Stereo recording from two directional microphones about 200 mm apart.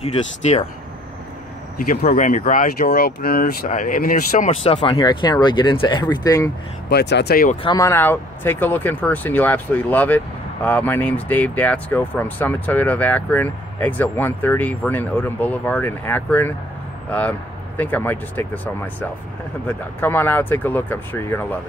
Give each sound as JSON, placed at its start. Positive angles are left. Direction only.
{"t": 0.5, "sound": "speech", "side_deg": 35}
{"t": 1.8, "sound": "speech", "side_deg": 40}
{"t": 4.6, "sound": "speech", "side_deg": 25}
{"t": 6.9, "sound": "speech", "side_deg": 55}
{"t": 7.6, "sound": "speech", "side_deg": 15}